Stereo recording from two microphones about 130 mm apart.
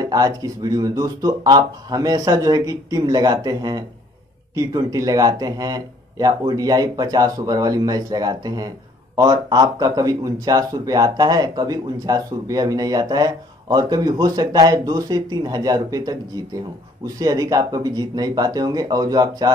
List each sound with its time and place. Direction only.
0.0 s speech: 30° right (ahead or behind)